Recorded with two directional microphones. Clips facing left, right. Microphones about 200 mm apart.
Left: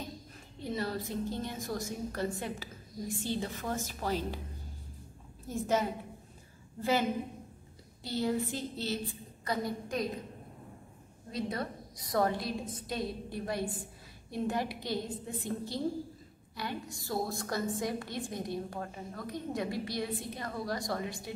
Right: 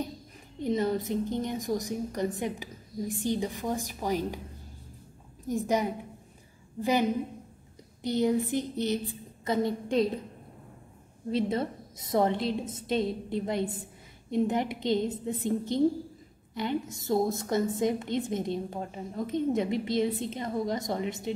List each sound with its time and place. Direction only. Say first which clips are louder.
0.6 s a woman's voice: right 8 dB; 20° right (ahead or behind)
5.5 s a woman's voice: right 3 dB; 15° right (ahead or behind)
11.3 s a woman's voice: right 7 dB; 25° right (ahead or behind)